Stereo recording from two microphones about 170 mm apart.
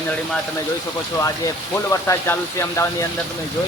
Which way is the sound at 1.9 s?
15° left (ahead or behind).